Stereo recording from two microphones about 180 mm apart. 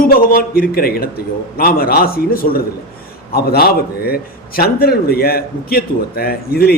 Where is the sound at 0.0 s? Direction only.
50° left (ahead or behind).